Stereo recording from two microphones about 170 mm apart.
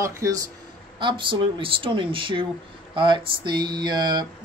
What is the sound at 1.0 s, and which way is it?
Speech, 30° right (ahead or behind).